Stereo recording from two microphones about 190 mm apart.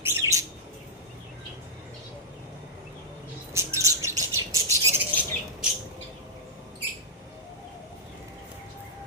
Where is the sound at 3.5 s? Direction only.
15° right (ahead or behind).